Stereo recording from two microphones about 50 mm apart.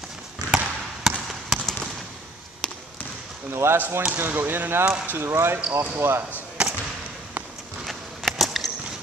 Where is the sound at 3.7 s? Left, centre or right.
Right.